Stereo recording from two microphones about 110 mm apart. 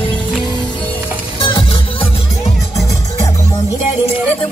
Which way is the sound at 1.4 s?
55° left (ahead or behind).